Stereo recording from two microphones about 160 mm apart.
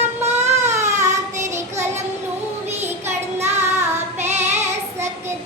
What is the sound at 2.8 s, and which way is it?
Child singing, 15° right (ahead or behind).